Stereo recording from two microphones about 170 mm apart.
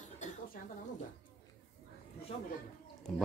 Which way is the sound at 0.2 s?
45° left (ahead or behind).